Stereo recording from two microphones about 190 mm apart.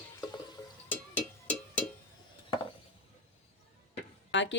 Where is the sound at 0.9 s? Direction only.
10° left (ahead or behind).